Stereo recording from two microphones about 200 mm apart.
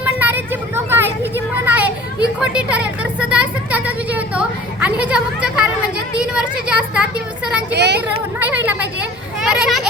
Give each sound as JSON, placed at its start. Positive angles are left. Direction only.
{"t": 0.0, "sound": "vehicle", "side_deg": -10}
{"t": 1.6, "sound": "children playing", "side_deg": -10}
{"t": 2.4, "sound": "speech", "side_deg": -5}
{"t": 7.7, "sound": "speech", "side_deg": -55}
{"t": 8.4, "sound": "a child's voice", "side_deg": -10}